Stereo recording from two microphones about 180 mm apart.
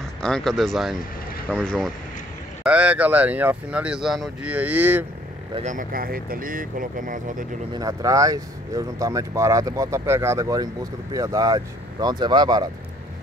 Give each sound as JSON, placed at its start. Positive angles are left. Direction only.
{"t": 0.2, "sound": "speech", "side_deg": 5}
{"t": 2.6, "sound": "speech", "side_deg": -5}
{"t": 5.6, "sound": "speech", "side_deg": -45}
{"t": 7.7, "sound": "speech", "side_deg": -20}